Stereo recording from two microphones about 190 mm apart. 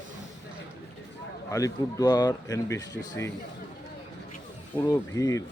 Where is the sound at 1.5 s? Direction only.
15° left (ahead or behind).